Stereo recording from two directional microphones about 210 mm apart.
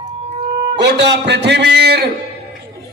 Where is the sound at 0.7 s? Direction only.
55° right (ahead or behind).